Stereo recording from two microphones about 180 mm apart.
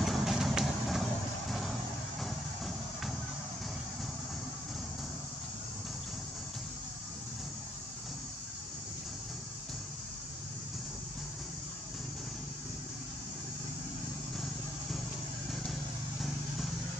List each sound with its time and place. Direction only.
0.0 s vehicle: centre (ahead or behind)
2.2 s music: centre (ahead or behind)